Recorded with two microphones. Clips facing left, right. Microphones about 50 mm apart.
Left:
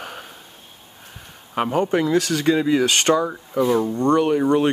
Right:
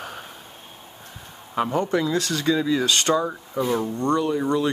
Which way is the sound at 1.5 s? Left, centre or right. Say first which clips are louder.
Left 2 dB; left.